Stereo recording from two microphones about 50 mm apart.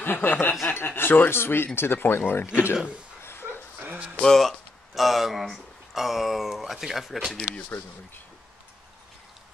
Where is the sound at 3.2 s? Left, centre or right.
Left.